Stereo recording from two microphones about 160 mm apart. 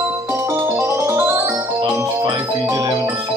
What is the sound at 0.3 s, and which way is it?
Music, 15° right (ahead or behind).